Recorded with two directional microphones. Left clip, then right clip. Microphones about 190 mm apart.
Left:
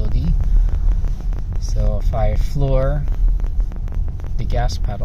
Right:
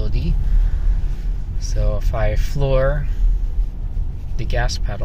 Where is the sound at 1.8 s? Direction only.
5° left (ahead or behind).